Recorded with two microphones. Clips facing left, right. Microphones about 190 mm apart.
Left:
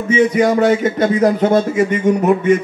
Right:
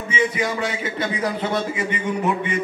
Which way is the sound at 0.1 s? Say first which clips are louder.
Left 10 dB; 45° left (ahead or behind).